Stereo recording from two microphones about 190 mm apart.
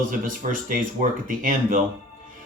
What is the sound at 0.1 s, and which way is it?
Speech, 45° right (ahead or behind).